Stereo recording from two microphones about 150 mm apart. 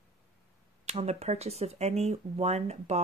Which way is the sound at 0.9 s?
45° right (ahead or behind).